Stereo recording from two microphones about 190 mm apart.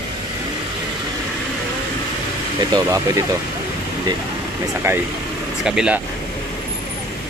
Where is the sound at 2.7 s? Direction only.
15° right (ahead or behind).